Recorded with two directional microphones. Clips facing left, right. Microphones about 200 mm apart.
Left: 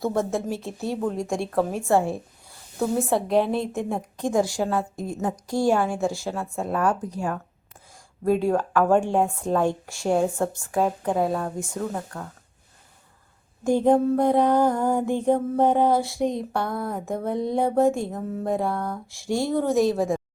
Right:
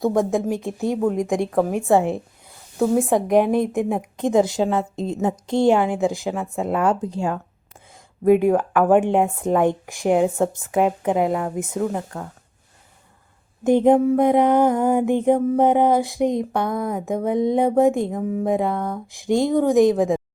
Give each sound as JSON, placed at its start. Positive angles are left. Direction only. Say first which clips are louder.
{"t": 0.0, "sound": "a woman's voice", "louder": "right 5 dB", "side_deg": -15}
{"t": 13.7, "sound": "a woman's voice", "louder": "right 4 dB", "side_deg": -20}